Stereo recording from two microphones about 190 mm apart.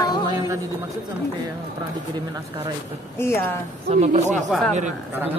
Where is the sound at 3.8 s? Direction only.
35° right (ahead or behind).